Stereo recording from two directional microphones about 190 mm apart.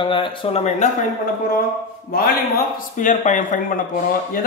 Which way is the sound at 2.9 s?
40° left (ahead or behind).